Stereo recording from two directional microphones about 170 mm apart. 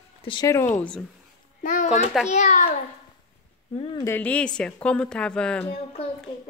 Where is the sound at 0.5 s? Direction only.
10° left (ahead or behind).